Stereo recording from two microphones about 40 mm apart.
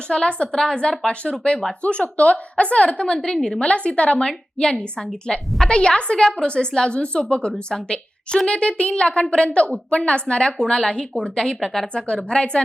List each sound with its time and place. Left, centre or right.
0.1 s a woman's voice: left
11.6 s speech: centre
11.9 s a woman's voice: left